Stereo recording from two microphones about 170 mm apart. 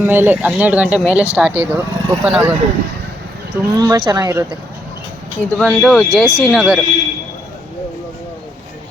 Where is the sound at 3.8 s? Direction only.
15° right (ahead or behind).